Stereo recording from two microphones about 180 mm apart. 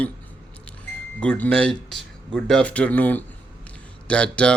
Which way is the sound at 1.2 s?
5° left (ahead or behind).